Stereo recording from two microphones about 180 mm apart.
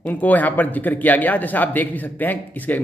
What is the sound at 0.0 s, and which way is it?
Speech, 10° left (ahead or behind).